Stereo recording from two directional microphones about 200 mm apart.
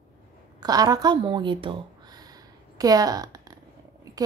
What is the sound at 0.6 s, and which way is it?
Speech, 20° right (ahead or behind).